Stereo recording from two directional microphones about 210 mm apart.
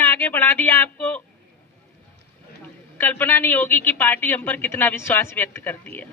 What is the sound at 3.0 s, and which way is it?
A woman's voice, 10° left (ahead or behind).